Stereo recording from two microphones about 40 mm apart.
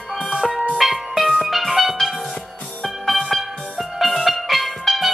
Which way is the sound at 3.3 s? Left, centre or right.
Centre.